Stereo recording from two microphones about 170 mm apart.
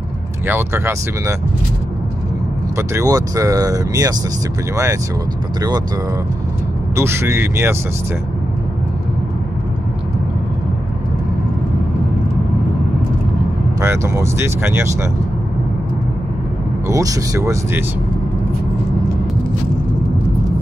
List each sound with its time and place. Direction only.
0.5 s speech: 10° right (ahead or behind)
2.9 s speech: 20° right (ahead or behind)
7.0 s speech: 15° right (ahead or behind)
13.7 s speech: 15° right (ahead or behind)
16.8 s speech: 20° right (ahead or behind)